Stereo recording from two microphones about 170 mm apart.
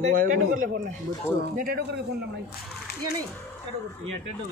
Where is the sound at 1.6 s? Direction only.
65° right (ahead or behind).